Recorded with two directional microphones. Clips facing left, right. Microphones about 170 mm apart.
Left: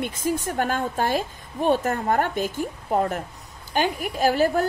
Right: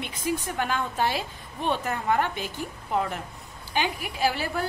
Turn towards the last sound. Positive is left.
turn(degrees=45)  # may be behind; listen again after turning